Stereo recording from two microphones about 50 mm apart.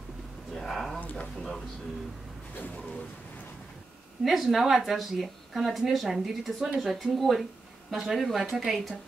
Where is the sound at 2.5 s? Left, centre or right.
Left.